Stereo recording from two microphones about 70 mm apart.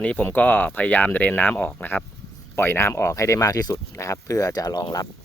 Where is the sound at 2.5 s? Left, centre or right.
Left.